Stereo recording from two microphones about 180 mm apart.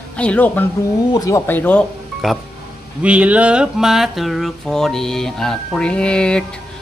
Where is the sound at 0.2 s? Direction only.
5° left (ahead or behind).